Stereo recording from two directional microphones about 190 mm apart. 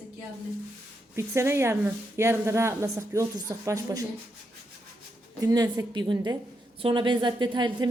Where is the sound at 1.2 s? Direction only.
15° right (ahead or behind).